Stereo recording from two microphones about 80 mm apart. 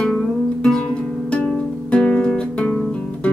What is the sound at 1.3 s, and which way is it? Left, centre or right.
Music, centre.